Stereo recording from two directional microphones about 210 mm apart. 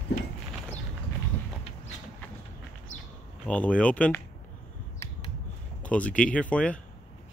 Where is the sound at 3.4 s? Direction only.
5° left (ahead or behind).